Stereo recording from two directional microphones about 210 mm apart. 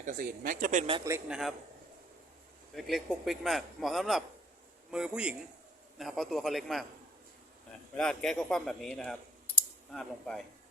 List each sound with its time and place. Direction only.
0.0 s speech: 40° right (ahead or behind)
0.9 s a man's voice: 15° right (ahead or behind)
1.3 s a man's voice: centre (ahead or behind)
2.7 s a man's voice: centre (ahead or behind)
7.9 s a man's voice: 5° left (ahead or behind)
9.6 s clicking: centre (ahead or behind)